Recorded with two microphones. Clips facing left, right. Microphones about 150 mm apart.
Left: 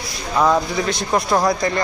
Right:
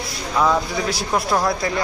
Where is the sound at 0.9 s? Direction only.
5° right (ahead or behind).